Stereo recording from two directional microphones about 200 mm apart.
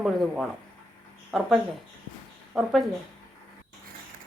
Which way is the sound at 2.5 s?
5° right (ahead or behind).